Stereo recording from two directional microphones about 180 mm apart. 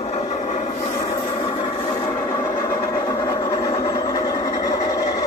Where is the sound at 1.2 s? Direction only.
30° left (ahead or behind).